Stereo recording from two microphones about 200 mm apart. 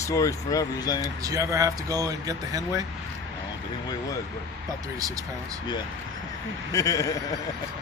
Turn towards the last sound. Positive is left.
turn(degrees=15)  # may be behind; listen again after turning